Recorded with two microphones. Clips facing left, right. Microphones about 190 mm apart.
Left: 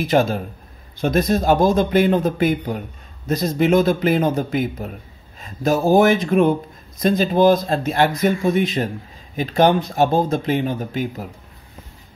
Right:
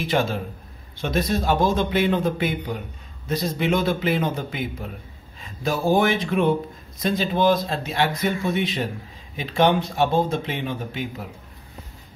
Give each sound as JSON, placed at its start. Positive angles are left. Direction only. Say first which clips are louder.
{"t": 0.0, "sound": "a man's voice", "louder": "left 5 dB", "side_deg": 40}